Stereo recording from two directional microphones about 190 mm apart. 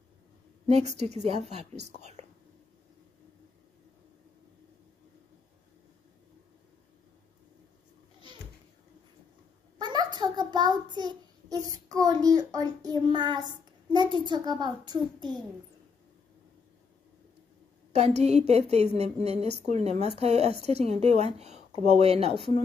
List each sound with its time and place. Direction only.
0.7 s a woman's voice: 35° right (ahead or behind)
9.8 s child singing: 25° right (ahead or behind)
12.4 s a child's voice: 20° right (ahead or behind)
17.9 s a woman's voice: 35° right (ahead or behind)